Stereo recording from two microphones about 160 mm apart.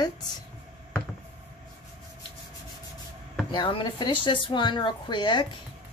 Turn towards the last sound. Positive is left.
turn(degrees=30)  # may be behind; listen again after turning